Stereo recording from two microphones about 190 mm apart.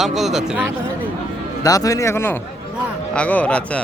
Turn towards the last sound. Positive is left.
turn(degrees=5)  # may be behind; listen again after turning